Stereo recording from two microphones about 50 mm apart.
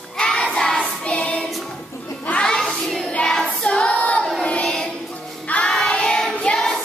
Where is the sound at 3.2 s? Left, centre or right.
Centre.